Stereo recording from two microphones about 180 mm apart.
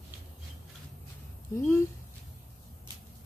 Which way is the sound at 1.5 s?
15° left (ahead or behind).